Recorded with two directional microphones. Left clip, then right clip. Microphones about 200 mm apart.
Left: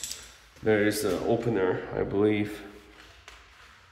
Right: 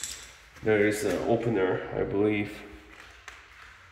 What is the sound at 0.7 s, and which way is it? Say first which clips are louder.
Speech: even; 15° left (ahead or behind).